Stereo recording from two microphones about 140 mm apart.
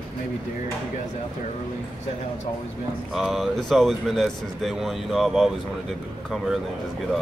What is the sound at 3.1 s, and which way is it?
Speech, centre (ahead or behind).